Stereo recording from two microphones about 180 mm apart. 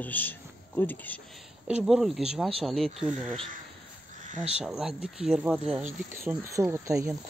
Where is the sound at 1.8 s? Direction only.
Centre (ahead or behind).